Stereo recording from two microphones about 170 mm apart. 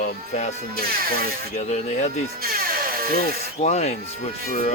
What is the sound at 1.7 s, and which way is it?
Speech, 45° left (ahead or behind).